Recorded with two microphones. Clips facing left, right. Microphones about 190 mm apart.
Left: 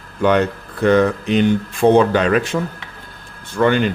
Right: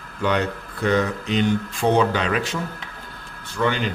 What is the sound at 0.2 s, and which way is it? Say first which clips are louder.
Speech: left 7 dB; 55° left (ahead or behind).